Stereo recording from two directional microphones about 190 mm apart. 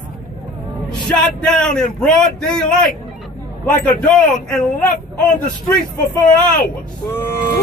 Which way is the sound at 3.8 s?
5° left (ahead or behind).